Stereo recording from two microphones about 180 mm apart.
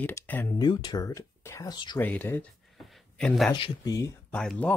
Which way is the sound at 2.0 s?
10° left (ahead or behind).